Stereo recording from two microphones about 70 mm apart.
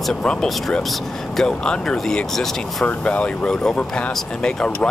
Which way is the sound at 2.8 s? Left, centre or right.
Centre.